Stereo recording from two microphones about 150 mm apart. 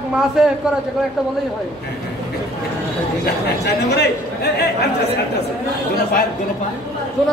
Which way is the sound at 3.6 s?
90° left.